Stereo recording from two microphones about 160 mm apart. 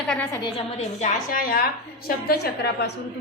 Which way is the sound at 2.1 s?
80° left.